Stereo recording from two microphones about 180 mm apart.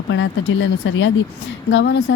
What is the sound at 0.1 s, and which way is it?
Speech, 90° left.